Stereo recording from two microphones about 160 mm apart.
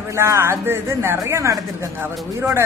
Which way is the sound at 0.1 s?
15° right (ahead or behind).